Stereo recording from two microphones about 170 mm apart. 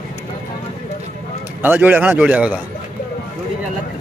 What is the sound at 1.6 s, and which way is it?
A man's voice, 10° right (ahead or behind).